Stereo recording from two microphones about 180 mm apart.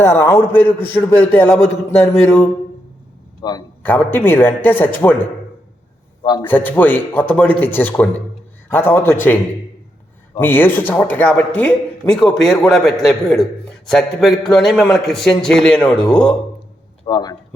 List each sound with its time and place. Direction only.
0.0 s a man's voice: 15° left (ahead or behind)
3.4 s a man's voice: 20° left (ahead or behind)
3.8 s a man's voice: 10° left (ahead or behind)
6.2 s a man's voice: 25° left (ahead or behind)
6.5 s a man's voice: 10° left (ahead or behind)
10.4 s a man's voice: 10° left (ahead or behind)
15.8 s a man's voice: 25° left (ahead or behind)